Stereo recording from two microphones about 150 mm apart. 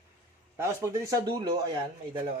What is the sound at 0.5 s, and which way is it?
A man's voice, 20° right (ahead or behind).